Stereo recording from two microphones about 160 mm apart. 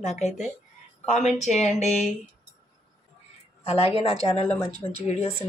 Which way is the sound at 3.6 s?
40° left (ahead or behind).